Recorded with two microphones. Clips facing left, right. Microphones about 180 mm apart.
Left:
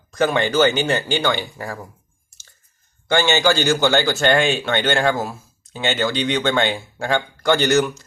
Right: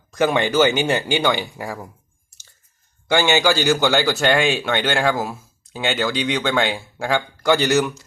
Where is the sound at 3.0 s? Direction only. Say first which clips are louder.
Even; 10° right (ahead or behind).